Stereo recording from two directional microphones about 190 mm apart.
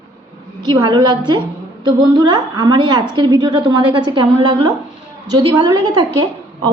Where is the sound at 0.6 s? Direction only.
25° right (ahead or behind).